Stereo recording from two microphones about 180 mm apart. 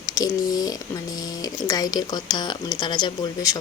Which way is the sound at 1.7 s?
20° left (ahead or behind).